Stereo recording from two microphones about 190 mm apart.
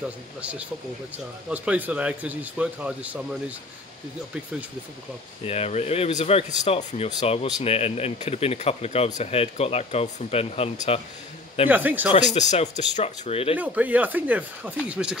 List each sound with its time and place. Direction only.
0.4 s speech: 5° right (ahead or behind)
5.4 s speech: 30° left (ahead or behind)
11.7 s speech: 10° right (ahead or behind)
12.1 s speech: 35° left (ahead or behind)
13.6 s speech: 10° right (ahead or behind)